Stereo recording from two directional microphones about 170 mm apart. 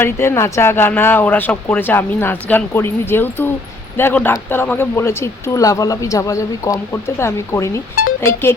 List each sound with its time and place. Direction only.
0.0 s speech: 15° left (ahead or behind)